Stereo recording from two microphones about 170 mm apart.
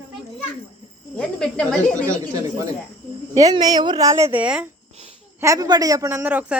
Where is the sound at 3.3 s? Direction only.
20° right (ahead or behind).